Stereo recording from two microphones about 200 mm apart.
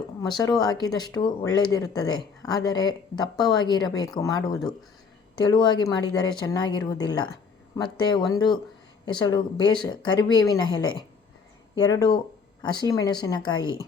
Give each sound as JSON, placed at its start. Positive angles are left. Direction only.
{"t": 0.2, "sound": "speech", "side_deg": 20}